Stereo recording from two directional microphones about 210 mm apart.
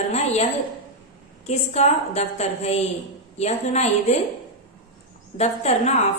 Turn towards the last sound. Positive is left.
turn(degrees=30)  # may be behind; listen again after turning